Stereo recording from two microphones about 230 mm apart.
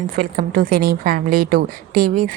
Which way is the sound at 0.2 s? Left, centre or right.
Right.